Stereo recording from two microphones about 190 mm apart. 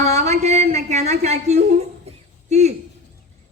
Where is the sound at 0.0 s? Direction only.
35° right (ahead or behind).